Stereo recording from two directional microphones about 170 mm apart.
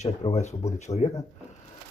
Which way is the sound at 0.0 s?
40° left (ahead or behind).